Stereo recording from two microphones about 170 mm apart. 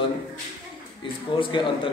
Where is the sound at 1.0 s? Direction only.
30° left (ahead or behind).